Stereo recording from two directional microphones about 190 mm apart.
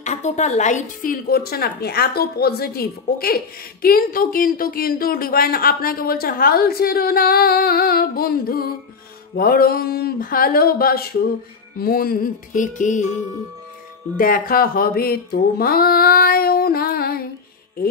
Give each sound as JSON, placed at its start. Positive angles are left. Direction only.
{"t": 0.0, "sound": "a woman's voice", "side_deg": 40}
{"t": 14.1, "sound": "a woman's voice", "side_deg": 45}